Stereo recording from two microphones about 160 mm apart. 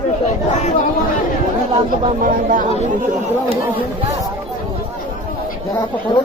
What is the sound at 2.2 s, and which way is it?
Speech, 60° right (ahead or behind).